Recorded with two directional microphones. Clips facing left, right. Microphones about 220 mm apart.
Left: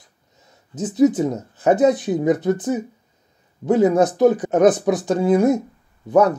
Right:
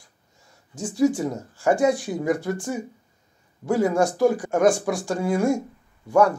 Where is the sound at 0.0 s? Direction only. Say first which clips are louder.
Left 3 dB; 20° left (ahead or behind).